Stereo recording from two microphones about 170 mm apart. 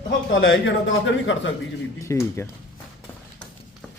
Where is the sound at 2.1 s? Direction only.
15° left (ahead or behind).